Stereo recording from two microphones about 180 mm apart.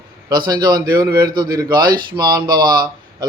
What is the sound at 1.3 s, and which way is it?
Speech, 55° right (ahead or behind).